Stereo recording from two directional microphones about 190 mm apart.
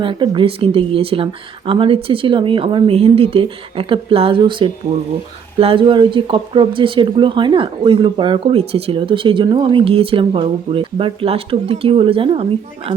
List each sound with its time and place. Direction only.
0.0 s speech: 25° right (ahead or behind)